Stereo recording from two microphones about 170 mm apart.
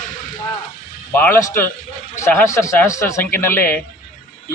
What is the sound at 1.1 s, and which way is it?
A man's voice, 10° left (ahead or behind).